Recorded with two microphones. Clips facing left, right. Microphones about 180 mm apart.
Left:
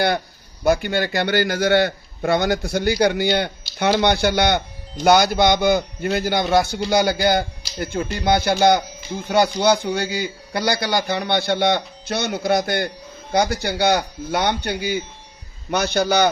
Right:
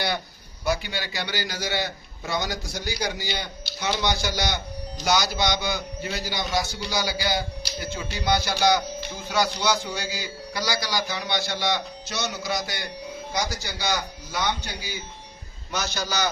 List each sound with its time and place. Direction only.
0.6 s a man's voice: 50° left (ahead or behind)